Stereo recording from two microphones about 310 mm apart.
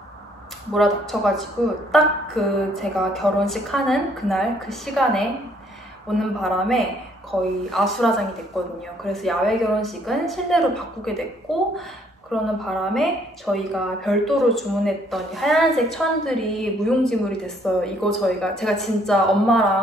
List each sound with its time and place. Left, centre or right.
0.7 s a woman's voice: centre